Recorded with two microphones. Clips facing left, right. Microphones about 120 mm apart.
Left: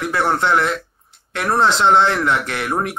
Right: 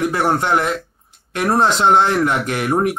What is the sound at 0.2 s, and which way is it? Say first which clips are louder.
Speech: left 2 dB; 15° right (ahead or behind).